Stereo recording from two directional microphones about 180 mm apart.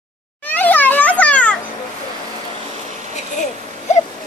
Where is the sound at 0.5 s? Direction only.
10° left (ahead or behind).